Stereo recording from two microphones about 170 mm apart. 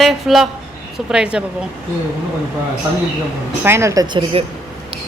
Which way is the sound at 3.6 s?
15° right (ahead or behind).